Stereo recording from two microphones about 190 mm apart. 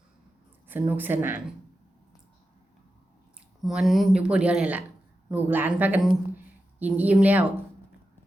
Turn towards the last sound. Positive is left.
turn(degrees=-10)  # may be behind; listen again after turning